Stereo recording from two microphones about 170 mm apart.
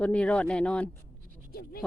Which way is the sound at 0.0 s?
5° left (ahead or behind).